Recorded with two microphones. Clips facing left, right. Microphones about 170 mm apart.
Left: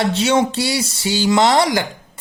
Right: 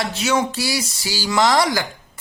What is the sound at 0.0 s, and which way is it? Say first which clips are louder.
Speech: left 4 dB; 30° left (ahead or behind).